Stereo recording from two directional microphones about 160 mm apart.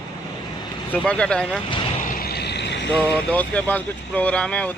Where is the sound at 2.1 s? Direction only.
80° left.